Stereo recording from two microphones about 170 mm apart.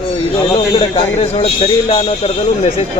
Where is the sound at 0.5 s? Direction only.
35° left (ahead or behind).